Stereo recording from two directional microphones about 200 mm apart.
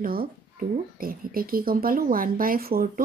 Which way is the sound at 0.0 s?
45° right (ahead or behind).